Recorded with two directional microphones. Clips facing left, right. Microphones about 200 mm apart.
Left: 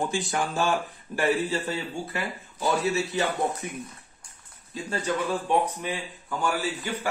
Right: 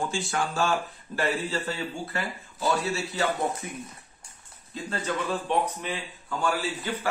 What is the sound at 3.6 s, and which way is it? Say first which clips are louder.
Speech: left 2 dB; 20° left (ahead or behind).